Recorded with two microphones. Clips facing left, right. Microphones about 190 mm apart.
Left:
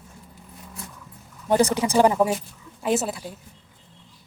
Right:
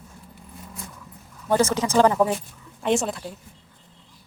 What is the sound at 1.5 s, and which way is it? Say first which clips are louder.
A woman's voice: left 1 dB; 15° left (ahead or behind).